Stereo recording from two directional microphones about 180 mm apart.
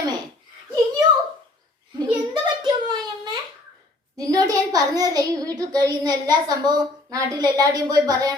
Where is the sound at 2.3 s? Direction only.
25° right (ahead or behind).